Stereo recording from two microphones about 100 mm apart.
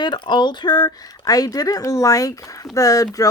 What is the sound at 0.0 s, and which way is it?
Speech, 50° left (ahead or behind).